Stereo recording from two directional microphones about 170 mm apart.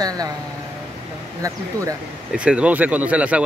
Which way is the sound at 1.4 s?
20° right (ahead or behind).